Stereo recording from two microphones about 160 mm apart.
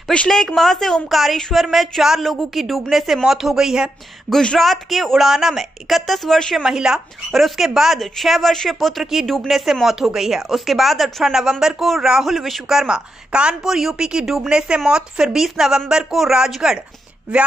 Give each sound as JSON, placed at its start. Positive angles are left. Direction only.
{"t": 0.1, "sound": "a woman's voice", "side_deg": 5}